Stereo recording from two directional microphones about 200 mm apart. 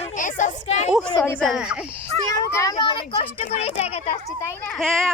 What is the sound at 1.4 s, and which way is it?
Speech, 5° right (ahead or behind).